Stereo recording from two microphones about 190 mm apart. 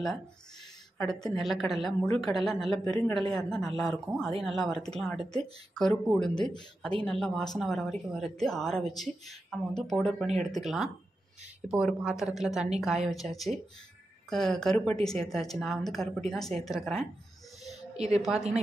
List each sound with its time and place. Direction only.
1.4 s a woman's voice: centre (ahead or behind)
2.9 s speech: 15° left (ahead or behind)
3.3 s a woman's voice: centre (ahead or behind)
17.9 s a woman's voice: 35° right (ahead or behind)